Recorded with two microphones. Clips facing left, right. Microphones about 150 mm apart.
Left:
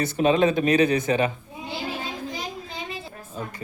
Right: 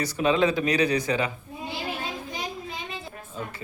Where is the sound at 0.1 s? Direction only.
25° left (ahead or behind).